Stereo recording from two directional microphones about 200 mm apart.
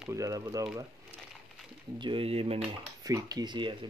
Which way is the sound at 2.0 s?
25° right (ahead or behind).